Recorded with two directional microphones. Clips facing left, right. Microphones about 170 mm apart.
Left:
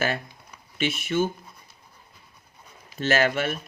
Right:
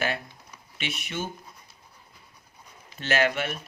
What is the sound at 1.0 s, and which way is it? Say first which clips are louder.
Speech: left 10 dB; 40° left (ahead or behind).